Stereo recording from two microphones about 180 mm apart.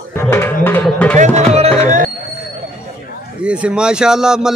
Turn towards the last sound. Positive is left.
turn(degrees=-5)  # may be behind; listen again after turning